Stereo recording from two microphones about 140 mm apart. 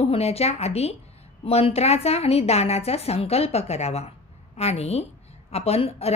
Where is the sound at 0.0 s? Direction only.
45° left (ahead or behind).